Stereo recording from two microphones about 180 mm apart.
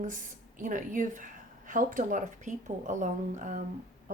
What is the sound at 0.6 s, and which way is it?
Speech, 45° right (ahead or behind).